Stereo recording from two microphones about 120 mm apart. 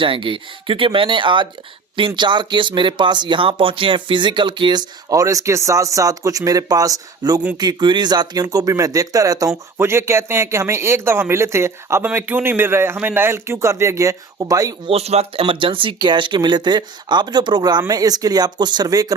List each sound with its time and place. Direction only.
0.0 s speech: 45° right (ahead or behind)
14.8 s speech: 60° right (ahead or behind); by 19.1 s 30° right (ahead or behind)